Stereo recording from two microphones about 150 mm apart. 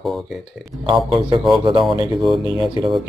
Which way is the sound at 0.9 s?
30° right (ahead or behind).